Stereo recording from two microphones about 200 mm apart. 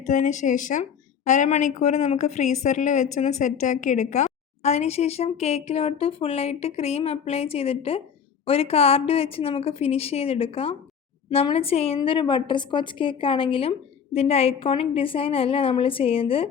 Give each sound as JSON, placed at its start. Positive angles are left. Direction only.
{"t": 0.0, "sound": "a woman's voice", "side_deg": 35}